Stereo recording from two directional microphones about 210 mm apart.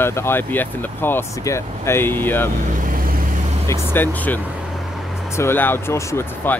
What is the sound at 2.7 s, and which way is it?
Vehicle, 40° right (ahead or behind).